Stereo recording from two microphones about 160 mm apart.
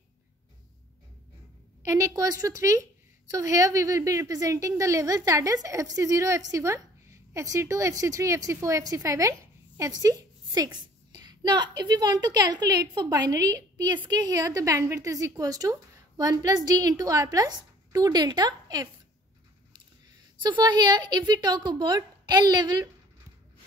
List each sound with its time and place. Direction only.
1.9 s a woman's voice: 20° right (ahead or behind)
20.4 s a woman's voice: 30° right (ahead or behind)